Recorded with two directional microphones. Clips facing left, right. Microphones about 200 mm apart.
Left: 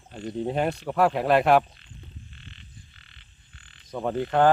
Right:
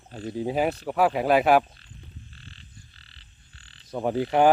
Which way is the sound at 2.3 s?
35° right (ahead or behind).